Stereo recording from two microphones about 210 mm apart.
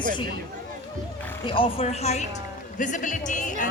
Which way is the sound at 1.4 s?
25° left (ahead or behind).